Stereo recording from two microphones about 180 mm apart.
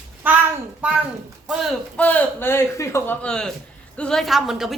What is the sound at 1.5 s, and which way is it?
Speech, centre (ahead or behind).